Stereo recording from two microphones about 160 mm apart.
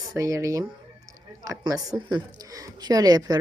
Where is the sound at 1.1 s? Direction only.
20° right (ahead or behind).